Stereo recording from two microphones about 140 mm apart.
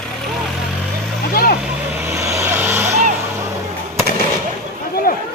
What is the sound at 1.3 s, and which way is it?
Vehicle, 90° left.